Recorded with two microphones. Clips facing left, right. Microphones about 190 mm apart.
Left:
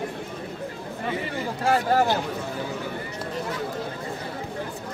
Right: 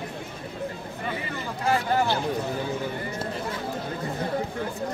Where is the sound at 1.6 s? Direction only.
40° left (ahead or behind).